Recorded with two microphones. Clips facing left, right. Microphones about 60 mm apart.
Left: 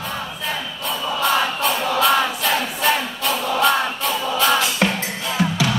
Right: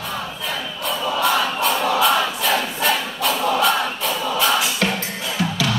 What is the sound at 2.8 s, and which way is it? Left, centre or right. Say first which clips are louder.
Choir: left 1 dB; centre.